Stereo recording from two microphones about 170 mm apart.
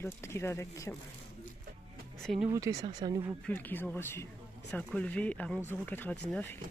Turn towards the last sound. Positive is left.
turn(degrees=10)  # may be behind; listen again after turning